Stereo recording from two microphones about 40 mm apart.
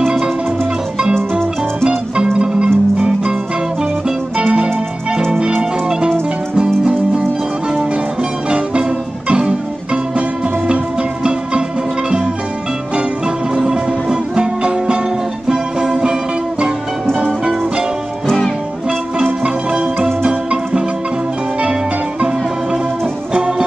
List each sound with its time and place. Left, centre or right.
0.0 s music: centre
2.3 s music: centre
4.4 s music: right
8.5 s music: right
13.6 s music: centre
19.4 s music: right